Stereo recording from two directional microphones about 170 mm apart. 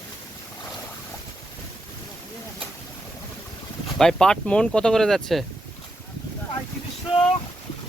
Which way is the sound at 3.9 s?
5° left (ahead or behind).